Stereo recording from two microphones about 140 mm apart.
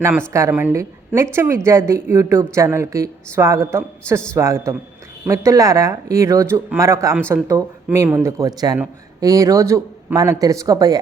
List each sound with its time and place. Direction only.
0.3 s a woman's voice: 15° right (ahead or behind)